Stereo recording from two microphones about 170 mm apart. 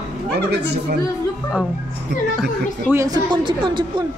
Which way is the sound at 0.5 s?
70° right (ahead or behind).